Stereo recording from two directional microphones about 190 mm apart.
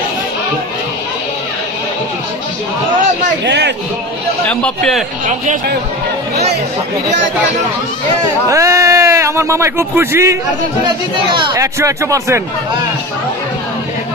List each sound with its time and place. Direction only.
3.4 s a man's voice: 65° right (ahead or behind)
4.5 s a man's voice: 5° left (ahead or behind)
5.2 s speech: 40° right (ahead or behind)
8.5 s speech: 15° right (ahead or behind)
10.8 s a man's voice: 25° right (ahead or behind)